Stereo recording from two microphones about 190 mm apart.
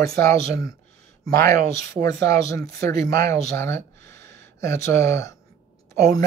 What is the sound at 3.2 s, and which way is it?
Speech, 15° left (ahead or behind).